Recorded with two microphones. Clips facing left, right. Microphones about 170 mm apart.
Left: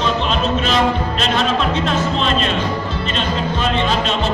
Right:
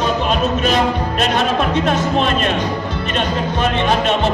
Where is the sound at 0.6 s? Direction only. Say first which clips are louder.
Right 1 dB; 50° right (ahead or behind).